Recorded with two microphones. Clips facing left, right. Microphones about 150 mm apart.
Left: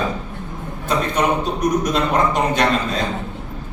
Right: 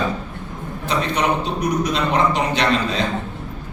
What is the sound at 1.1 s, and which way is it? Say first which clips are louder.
Speech: left 1 dB; 50° left (ahead or behind).